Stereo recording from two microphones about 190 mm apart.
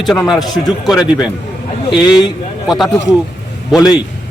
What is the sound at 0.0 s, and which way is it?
Speech, centre (ahead or behind).